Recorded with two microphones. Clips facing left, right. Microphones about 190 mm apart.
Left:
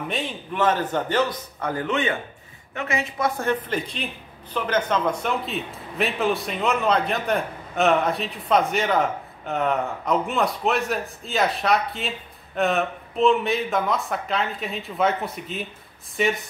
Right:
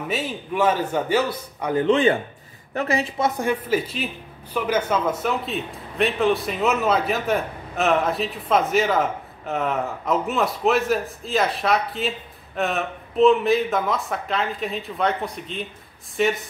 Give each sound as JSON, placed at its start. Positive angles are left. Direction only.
{"t": 0.1, "sound": "a man's voice", "side_deg": -5}
{"t": 1.9, "sound": "a woman's voice", "side_deg": -30}
{"t": 3.3, "sound": "a man's voice", "side_deg": -10}